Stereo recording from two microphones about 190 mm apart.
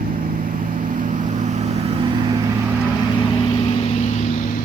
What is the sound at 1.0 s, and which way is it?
Vehicle, 40° right (ahead or behind).